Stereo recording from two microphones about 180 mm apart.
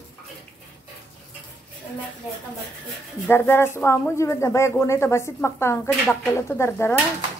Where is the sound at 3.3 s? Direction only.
15° left (ahead or behind).